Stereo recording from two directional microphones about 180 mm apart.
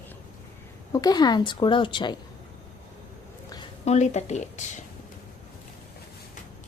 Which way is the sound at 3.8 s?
40° left (ahead or behind).